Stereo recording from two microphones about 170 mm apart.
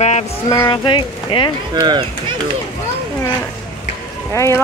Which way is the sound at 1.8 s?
25° right (ahead or behind).